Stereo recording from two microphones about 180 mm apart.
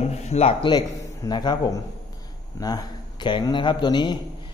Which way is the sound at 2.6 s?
25° left (ahead or behind).